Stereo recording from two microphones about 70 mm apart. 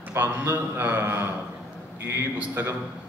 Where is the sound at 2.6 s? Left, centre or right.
Right.